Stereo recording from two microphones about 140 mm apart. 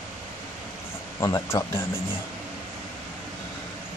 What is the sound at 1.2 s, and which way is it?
Speech, 25° left (ahead or behind).